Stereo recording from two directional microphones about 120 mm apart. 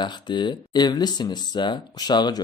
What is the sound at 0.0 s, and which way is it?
Speech, 40° left (ahead or behind).